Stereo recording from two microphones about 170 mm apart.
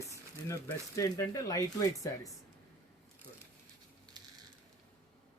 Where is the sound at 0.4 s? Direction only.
15° left (ahead or behind).